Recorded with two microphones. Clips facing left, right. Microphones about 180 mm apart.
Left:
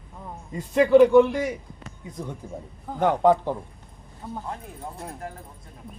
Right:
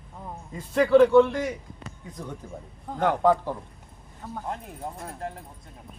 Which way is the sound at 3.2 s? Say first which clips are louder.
Left 3 dB; 20° left (ahead or behind).